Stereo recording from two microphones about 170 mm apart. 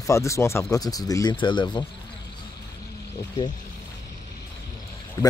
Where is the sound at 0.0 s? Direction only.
20° left (ahead or behind).